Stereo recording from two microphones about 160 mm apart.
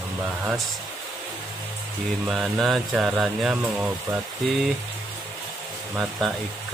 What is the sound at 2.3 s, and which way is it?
Speech, centre (ahead or behind).